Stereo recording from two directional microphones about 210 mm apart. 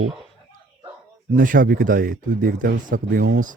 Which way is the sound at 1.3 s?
40° right (ahead or behind).